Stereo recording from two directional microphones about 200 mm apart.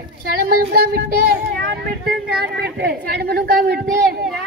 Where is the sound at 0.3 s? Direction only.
45° right (ahead or behind).